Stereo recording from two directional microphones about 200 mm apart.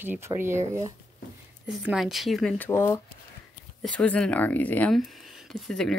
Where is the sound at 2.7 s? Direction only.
10° left (ahead or behind).